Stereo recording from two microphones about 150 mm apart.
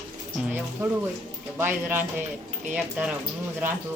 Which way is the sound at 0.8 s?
15° right (ahead or behind).